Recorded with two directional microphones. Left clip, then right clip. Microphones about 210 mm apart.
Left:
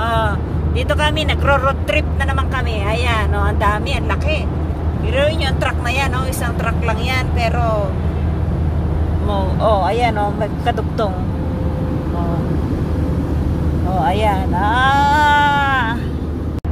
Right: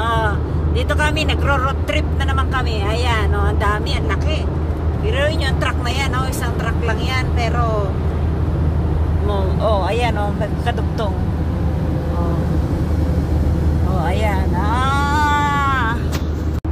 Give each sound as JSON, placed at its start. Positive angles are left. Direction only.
{"t": 0.0, "sound": "vehicle", "side_deg": 5}
{"t": 0.8, "sound": "speech", "side_deg": 10}
{"t": 5.1, "sound": "speech", "side_deg": 15}
{"t": 9.6, "sound": "speech", "side_deg": 10}
{"t": 14.0, "sound": "vehicle", "side_deg": 20}